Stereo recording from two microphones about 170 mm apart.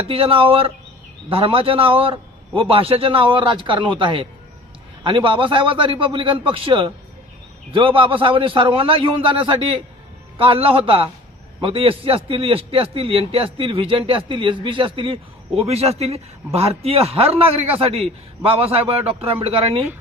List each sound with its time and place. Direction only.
0.1 s a man's voice: 30° right (ahead or behind)